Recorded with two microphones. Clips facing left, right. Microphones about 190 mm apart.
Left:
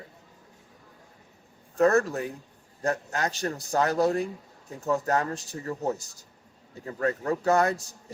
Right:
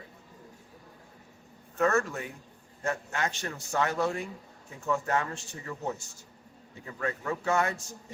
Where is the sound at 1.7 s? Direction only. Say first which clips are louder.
Left 5 dB; 35° left (ahead or behind).